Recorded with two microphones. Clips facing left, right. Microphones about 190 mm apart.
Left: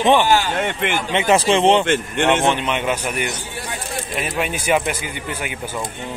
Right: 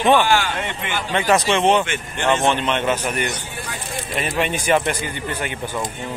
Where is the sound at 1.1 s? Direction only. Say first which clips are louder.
Left 1 dB; 25° left (ahead or behind).